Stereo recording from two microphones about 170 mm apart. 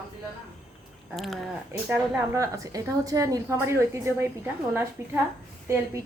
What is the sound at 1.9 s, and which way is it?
A woman's voice, 15° right (ahead or behind).